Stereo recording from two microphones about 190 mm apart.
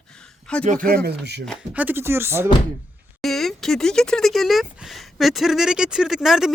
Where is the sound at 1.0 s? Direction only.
60° right (ahead or behind).